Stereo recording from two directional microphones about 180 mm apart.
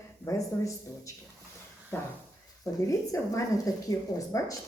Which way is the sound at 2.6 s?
15° left (ahead or behind).